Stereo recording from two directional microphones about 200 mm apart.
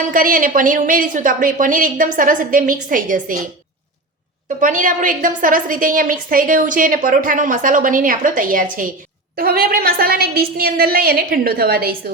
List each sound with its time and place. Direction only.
0.1 s a woman's voice: 45° right (ahead or behind)